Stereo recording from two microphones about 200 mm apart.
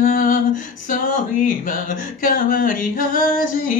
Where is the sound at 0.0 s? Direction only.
40° left (ahead or behind).